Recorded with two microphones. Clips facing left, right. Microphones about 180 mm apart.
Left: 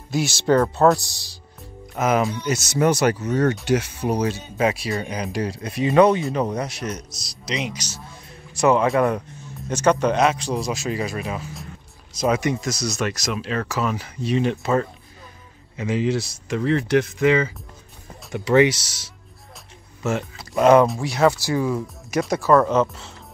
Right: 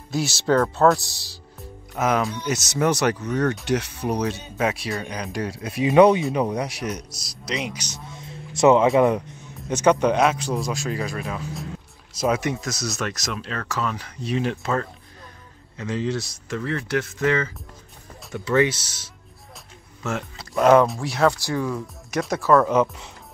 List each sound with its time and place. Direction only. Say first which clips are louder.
0.1 s speech: left 2 dB; centre (ahead or behind)
6.5 s speech: even; 10° right (ahead or behind)
7.4 s speech: left 1 dB; centre (ahead or behind)
7.7 s speech: left 1 dB; 15° right (ahead or behind)
8.1 s a sound: right 4 dB; 25° right (ahead or behind)
8.9 s speech: right 2 dB; 20° right (ahead or behind); by 22.8 s centre (ahead or behind)